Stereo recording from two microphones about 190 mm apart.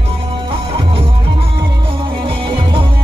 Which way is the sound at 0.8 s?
30° right (ahead or behind).